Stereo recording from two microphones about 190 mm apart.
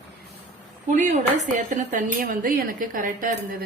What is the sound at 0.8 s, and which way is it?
A woman's voice, 40° right (ahead or behind).